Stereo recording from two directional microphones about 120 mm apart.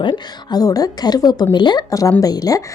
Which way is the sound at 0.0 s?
40° left (ahead or behind).